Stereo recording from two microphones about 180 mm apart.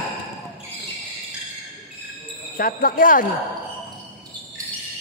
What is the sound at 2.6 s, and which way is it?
Speech, 55° left (ahead or behind).